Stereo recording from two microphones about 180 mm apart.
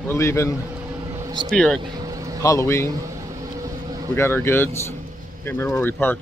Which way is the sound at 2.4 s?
15° left (ahead or behind).